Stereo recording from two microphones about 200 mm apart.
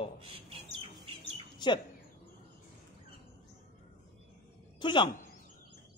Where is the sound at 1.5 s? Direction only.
20° left (ahead or behind).